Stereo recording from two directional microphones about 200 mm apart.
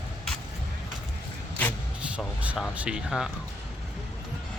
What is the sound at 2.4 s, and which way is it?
Speech, 5° right (ahead or behind).